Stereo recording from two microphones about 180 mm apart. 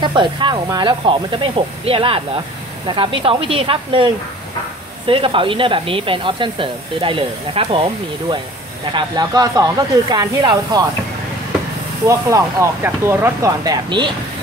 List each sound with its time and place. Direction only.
0.0 s speech: 25° right (ahead or behind)
12.1 s speech: 15° right (ahead or behind)